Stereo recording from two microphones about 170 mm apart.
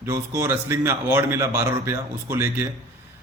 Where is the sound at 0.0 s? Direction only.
15° right (ahead or behind).